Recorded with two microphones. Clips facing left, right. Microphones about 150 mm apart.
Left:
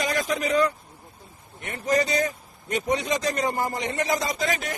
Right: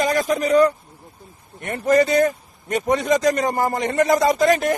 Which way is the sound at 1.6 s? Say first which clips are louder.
Right 7 dB; 55° right (ahead or behind).